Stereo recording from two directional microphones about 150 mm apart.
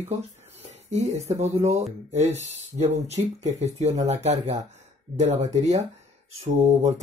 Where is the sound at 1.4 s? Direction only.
45° right (ahead or behind).